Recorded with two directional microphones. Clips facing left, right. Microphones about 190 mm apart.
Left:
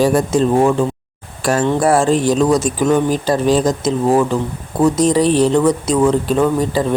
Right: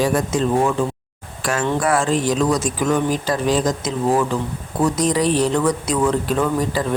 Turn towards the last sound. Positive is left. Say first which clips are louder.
# left 5 dB
turn(degrees=25)  # may be behind; listen again after turning